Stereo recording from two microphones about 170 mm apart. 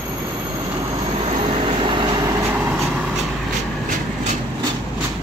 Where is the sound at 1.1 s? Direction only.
35° right (ahead or behind); by 2.8 s 10° right (ahead or behind).